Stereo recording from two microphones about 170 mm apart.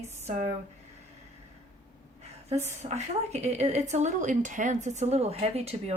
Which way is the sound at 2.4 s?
40° right (ahead or behind).